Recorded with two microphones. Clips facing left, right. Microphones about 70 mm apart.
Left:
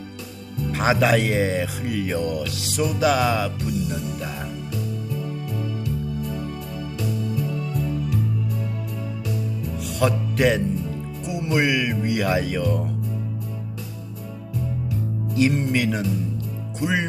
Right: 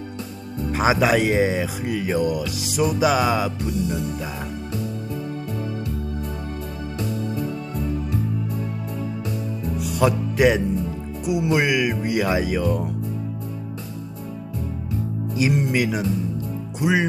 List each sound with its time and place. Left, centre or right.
0.7 s speech: centre
7.3 s music: right
9.7 s music: centre
11.3 s speech: centre
15.4 s speech: centre